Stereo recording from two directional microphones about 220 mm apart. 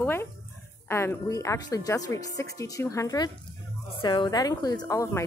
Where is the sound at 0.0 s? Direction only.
10° left (ahead or behind).